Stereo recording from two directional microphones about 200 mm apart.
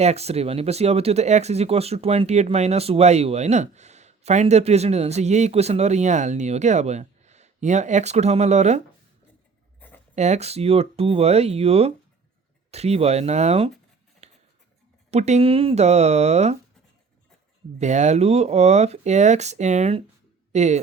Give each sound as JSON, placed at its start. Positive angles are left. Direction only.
{"t": 0.0, "sound": "speech", "side_deg": -30}
{"t": 9.8, "sound": "writing", "side_deg": 10}
{"t": 10.2, "sound": "speech", "side_deg": -35}
{"t": 14.2, "sound": "a sound", "side_deg": -35}
{"t": 15.1, "sound": "speech", "side_deg": -35}
{"t": 17.7, "sound": "speech", "side_deg": -35}